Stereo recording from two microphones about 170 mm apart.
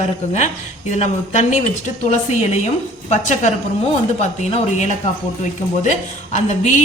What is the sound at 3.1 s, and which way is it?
A man's voice, 45° left (ahead or behind).